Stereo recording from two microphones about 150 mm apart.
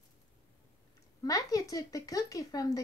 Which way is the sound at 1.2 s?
25° left (ahead or behind).